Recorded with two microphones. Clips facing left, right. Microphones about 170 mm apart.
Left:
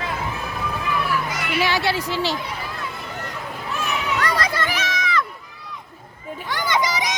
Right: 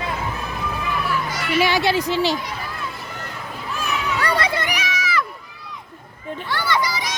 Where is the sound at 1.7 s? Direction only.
15° right (ahead or behind).